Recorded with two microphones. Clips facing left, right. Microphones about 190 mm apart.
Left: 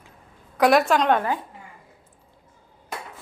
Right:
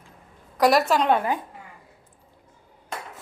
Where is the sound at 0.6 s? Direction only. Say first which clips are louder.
Left 1 dB; centre (ahead or behind).